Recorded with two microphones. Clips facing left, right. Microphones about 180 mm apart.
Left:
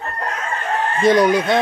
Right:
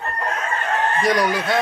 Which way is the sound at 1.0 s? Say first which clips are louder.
Left 9 dB; 20° left (ahead or behind).